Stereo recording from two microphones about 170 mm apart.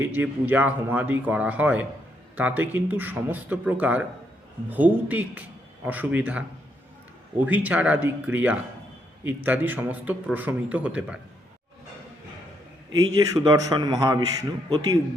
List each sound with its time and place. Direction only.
0.0 s speech: 10° right (ahead or behind)
7.4 s speech: 10° right (ahead or behind)
13.1 s a man's voice: 20° right (ahead or behind)